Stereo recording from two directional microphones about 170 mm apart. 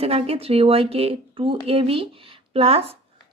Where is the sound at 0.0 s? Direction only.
35° right (ahead or behind).